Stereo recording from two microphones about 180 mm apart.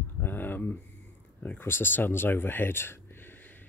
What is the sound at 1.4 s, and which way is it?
Speech, 10° left (ahead or behind).